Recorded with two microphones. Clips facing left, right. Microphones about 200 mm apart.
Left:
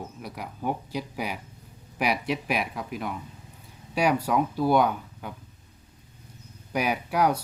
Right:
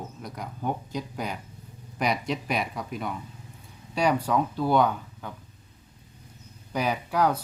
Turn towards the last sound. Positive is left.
turn(degrees=10)  # may be behind; listen again after turning